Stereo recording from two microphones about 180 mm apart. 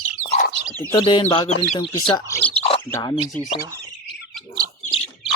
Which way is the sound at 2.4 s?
10° left (ahead or behind).